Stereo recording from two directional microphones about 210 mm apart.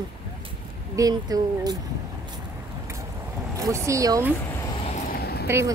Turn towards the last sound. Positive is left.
turn(degrees=-10)  # may be behind; listen again after turning